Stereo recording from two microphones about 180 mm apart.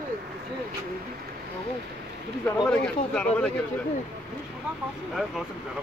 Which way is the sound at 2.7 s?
5° left (ahead or behind).